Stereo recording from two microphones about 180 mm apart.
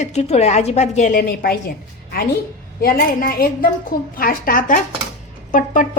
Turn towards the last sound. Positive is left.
turn(degrees=45)  # may be behind; listen again after turning